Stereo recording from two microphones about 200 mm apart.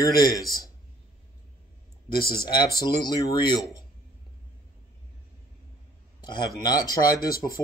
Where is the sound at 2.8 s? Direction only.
20° left (ahead or behind).